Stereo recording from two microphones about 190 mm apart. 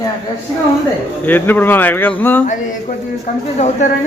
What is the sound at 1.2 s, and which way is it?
Speech, 10° left (ahead or behind).